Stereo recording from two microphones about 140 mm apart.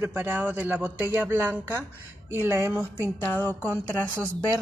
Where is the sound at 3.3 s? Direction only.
15° left (ahead or behind).